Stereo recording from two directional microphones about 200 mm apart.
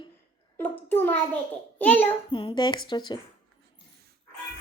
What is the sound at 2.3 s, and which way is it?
Speech, 25° left (ahead or behind).